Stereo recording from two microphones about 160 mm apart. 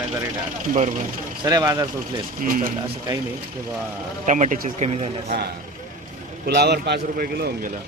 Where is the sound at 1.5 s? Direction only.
20° right (ahead or behind).